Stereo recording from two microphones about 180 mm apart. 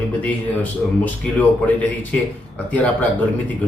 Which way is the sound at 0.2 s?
10° left (ahead or behind).